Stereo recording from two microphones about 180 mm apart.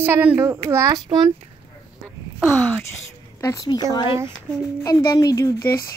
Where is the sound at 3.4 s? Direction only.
20° left (ahead or behind).